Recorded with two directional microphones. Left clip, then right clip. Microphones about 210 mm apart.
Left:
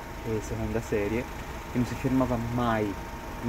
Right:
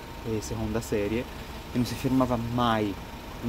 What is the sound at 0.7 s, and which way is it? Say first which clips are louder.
Speech: even; 15° right (ahead or behind).